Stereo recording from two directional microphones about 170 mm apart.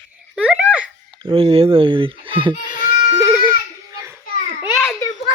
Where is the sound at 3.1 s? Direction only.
15° right (ahead or behind).